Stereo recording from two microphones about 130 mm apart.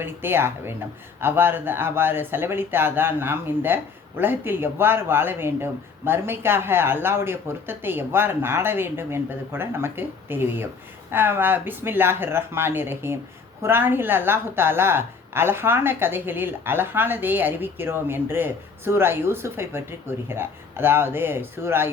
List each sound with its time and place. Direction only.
0.0 s speech: 15° right (ahead or behind)